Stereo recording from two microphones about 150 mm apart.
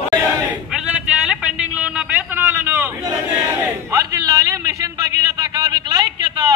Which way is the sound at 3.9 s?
25° right (ahead or behind).